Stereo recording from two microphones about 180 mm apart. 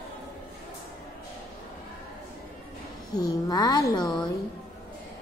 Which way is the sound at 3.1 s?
20° left (ahead or behind).